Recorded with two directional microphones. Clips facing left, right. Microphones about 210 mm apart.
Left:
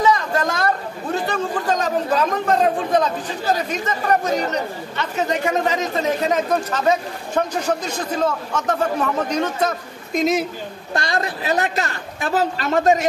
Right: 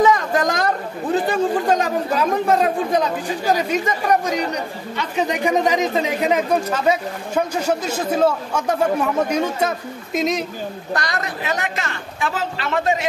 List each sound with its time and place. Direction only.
0.0 s a sound: 15° right (ahead or behind)
1.2 s speech: 10° right (ahead or behind)
10.9 s a woman's voice: 25° left (ahead or behind)